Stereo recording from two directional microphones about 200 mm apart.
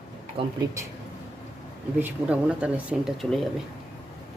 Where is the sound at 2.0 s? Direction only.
5° right (ahead or behind).